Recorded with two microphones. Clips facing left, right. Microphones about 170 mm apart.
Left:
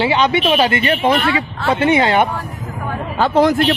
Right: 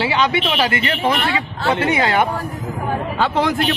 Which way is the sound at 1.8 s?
25° left (ahead or behind).